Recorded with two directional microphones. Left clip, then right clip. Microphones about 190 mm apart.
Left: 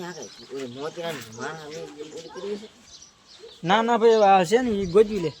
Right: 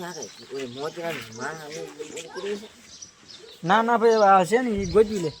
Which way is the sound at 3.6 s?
5° left (ahead or behind).